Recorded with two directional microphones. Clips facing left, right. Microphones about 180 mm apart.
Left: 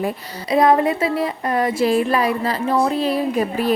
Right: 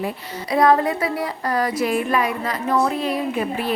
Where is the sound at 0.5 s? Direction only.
20° left (ahead or behind).